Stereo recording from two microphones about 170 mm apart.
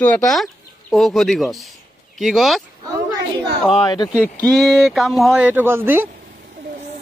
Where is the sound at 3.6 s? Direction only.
25° left (ahead or behind).